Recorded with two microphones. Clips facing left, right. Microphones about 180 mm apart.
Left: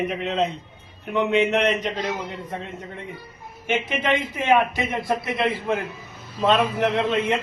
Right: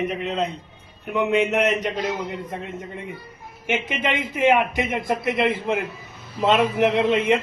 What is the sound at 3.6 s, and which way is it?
Speech, 15° right (ahead or behind).